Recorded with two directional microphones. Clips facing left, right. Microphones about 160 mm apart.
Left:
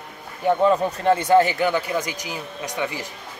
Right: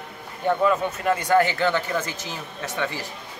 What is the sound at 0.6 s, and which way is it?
Speech, 30° left (ahead or behind).